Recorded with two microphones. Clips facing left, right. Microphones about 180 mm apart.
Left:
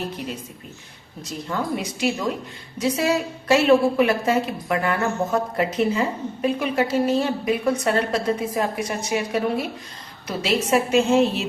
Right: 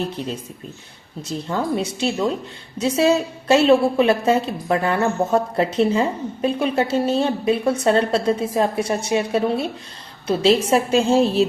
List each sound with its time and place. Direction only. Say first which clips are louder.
0.2 s a woman's voice: right 3 dB; 30° right (ahead or behind)
1.5 s a woman's voice: right 3 dB; 30° right (ahead or behind)